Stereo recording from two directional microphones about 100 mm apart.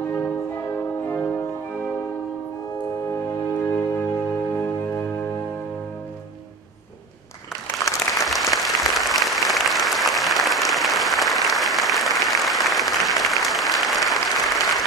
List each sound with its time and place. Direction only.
1.0 s music: 15° left (ahead or behind)
3.6 s music: 25° left (ahead or behind)
8.3 s applause: centre (ahead or behind)